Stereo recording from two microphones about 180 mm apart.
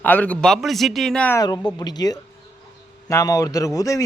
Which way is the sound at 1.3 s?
20° left (ahead or behind).